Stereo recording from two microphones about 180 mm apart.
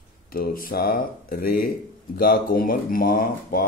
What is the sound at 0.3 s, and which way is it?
Speech, 55° left (ahead or behind).